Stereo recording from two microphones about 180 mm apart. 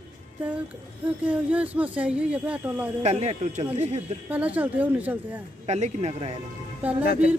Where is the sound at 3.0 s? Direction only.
35° right (ahead or behind).